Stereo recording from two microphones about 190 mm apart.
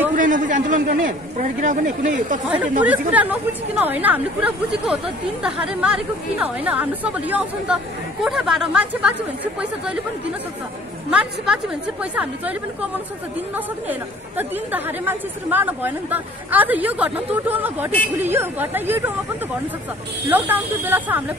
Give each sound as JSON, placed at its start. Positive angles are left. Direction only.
{"t": 0.1, "sound": "a man's voice", "side_deg": -45}
{"t": 2.4, "sound": "speech", "side_deg": -5}
{"t": 11.1, "sound": "speech", "side_deg": -5}
{"t": 13.8, "sound": "speech", "side_deg": -10}
{"t": 20.2, "sound": "speech", "side_deg": -10}